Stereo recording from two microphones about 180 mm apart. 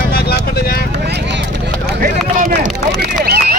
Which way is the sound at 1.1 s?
75° right (ahead or behind).